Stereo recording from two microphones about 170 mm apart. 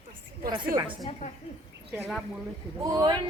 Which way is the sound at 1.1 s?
40° left (ahead or behind).